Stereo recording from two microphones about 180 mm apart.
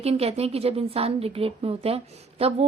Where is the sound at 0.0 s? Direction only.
35° right (ahead or behind).